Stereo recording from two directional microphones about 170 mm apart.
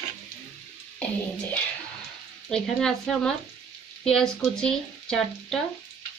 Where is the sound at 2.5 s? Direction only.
5° left (ahead or behind).